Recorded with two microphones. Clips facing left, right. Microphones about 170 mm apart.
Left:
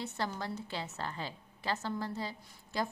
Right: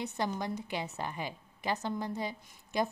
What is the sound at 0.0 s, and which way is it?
A woman's voice, 15° right (ahead or behind).